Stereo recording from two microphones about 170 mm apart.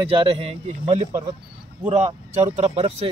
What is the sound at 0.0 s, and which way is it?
A man's voice, 35° right (ahead or behind).